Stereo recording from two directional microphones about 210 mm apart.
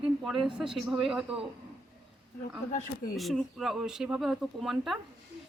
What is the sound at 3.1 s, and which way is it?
A woman's voice, centre (ahead or behind).